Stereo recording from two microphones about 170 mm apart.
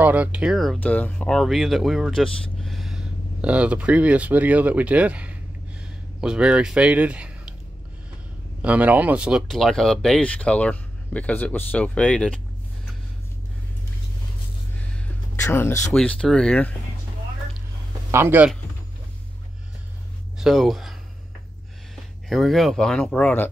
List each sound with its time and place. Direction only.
0.0 s speech: 10° right (ahead or behind)
8.6 s speech: 10° right (ahead or behind); by 12.4 s 5° left (ahead or behind)
15.4 s speech: 15° left (ahead or behind)
15.9 s speech: 5° left (ahead or behind)
18.1 s a man's voice: 10° right (ahead or behind)
20.3 s speech: centre (ahead or behind)
22.3 s speech: centre (ahead or behind)